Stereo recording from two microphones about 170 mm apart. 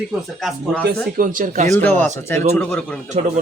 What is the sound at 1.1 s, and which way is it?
Speech, 55° right (ahead or behind).